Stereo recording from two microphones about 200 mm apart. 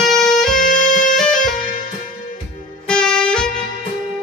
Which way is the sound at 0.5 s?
40° left (ahead or behind).